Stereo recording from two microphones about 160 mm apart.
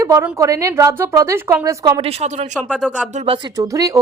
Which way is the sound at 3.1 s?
35° right (ahead or behind).